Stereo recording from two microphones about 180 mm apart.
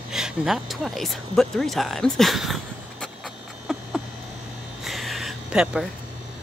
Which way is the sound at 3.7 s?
Centre (ahead or behind).